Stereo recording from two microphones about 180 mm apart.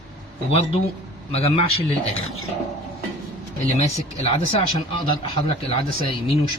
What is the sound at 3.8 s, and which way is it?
Speech, 35° left (ahead or behind).